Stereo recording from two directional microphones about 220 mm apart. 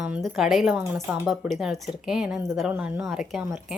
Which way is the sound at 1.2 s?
Centre (ahead or behind).